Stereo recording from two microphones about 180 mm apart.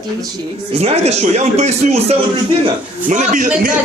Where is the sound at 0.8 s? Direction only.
35° right (ahead or behind).